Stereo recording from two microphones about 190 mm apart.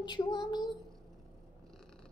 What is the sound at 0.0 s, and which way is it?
Speech, 25° left (ahead or behind).